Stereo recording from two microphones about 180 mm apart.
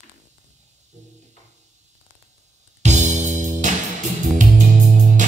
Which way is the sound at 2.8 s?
40° right (ahead or behind).